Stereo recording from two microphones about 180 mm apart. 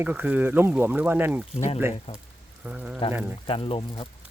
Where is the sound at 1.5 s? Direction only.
35° left (ahead or behind).